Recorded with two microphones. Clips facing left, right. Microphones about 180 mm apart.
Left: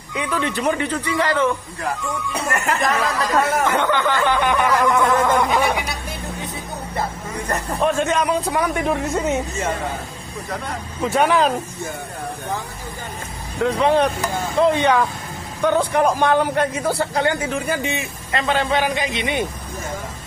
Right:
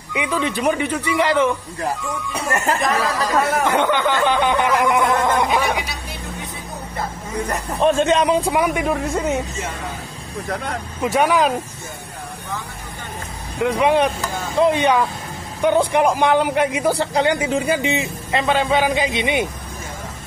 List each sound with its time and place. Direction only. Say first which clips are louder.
0.1 s a man's voice: right 1 dB; 15° right (ahead or behind)
2.8 s speech: even; centre (ahead or behind)
3.6 s a man's voice: right 1 dB; 15° right (ahead or behind)
7.8 s speech: right 4 dB; 20° right (ahead or behind)
8.5 s speech: right 2 dB; 10° right (ahead or behind)
11.1 s a man's voice: even; 10° right (ahead or behind)
13.6 s a man's voice: even; 10° right (ahead or behind)